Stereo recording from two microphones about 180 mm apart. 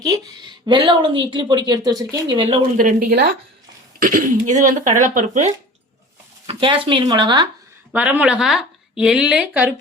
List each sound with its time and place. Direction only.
0.0 s a woman's voice: 20° right (ahead or behind)
2.7 s a woman's voice: 55° right (ahead or behind)
6.5 s a woman's voice: 30° right (ahead or behind)
7.9 s speech: 10° right (ahead or behind)